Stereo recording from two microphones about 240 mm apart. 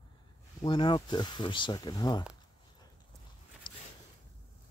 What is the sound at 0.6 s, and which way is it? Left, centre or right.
Speech, centre.